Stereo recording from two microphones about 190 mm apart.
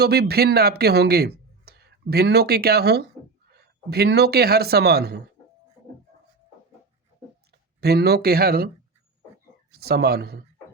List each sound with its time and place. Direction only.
0.0 s speech: 55° right (ahead or behind)
7.8 s speech: 55° right (ahead or behind)
9.8 s speech: 55° right (ahead or behind)